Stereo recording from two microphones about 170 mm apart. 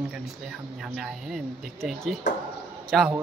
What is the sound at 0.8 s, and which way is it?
A man's voice, centre (ahead or behind).